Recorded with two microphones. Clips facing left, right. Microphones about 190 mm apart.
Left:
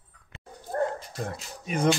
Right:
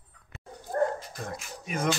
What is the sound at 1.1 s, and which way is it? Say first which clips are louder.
Speech: left 3 dB; 30° left (ahead or behind).